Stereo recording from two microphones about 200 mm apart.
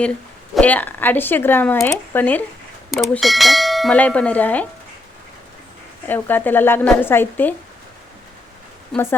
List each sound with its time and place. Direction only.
0.5 s speech: 5° left (ahead or behind)
2.9 s bell: centre (ahead or behind)
6.1 s speech: 10° left (ahead or behind)
8.9 s speech: 10° left (ahead or behind)